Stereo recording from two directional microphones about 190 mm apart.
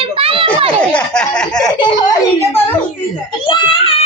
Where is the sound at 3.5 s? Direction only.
25° left (ahead or behind).